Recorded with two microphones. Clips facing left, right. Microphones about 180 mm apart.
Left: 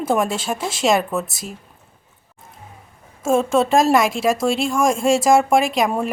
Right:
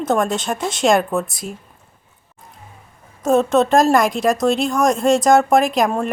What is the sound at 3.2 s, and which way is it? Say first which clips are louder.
Speech: right 2 dB; 5° left (ahead or behind).